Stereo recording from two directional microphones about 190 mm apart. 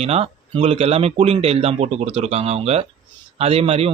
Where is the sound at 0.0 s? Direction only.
30° right (ahead or behind).